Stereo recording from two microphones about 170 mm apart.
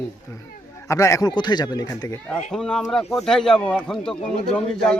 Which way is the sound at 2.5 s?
Centre (ahead or behind).